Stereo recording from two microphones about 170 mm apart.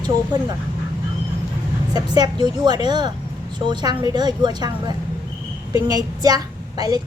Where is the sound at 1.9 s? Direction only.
25° right (ahead or behind).